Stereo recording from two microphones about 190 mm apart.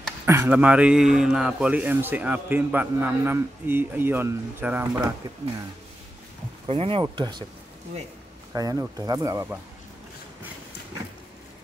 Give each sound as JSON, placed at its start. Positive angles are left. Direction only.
{"t": 0.2, "sound": "a man's voice", "side_deg": -10}
{"t": 6.7, "sound": "speech", "side_deg": -30}
{"t": 8.5, "sound": "speech", "side_deg": -20}